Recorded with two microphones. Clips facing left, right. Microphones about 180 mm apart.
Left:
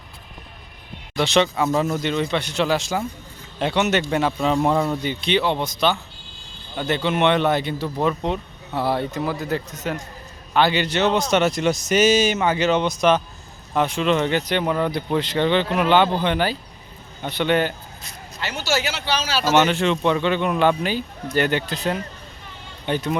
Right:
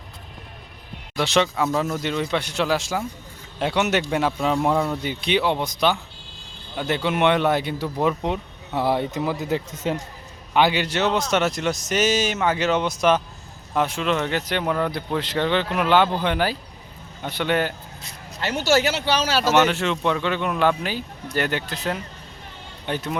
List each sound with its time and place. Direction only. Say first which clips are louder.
1.1 s a man's voice: left 2 dB; 5° right (ahead or behind)
5.0 s a man's voice: left 1 dB; 10° right (ahead or behind); by 10.0 s 25° right (ahead or behind)
10.5 s a man's voice: left 1 dB; 10° right (ahead or behind)
18.4 s speech: right 4 dB; 55° right (ahead or behind)
19.5 s a man's voice: left 3 dB; centre (ahead or behind)